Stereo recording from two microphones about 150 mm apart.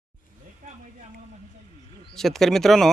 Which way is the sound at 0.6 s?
60° right (ahead or behind).